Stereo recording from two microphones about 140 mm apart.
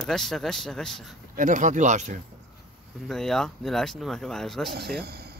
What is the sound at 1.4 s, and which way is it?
Speech, 65° right (ahead or behind).